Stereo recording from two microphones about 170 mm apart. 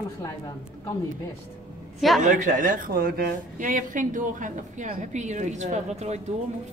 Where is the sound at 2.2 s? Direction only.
50° right (ahead or behind).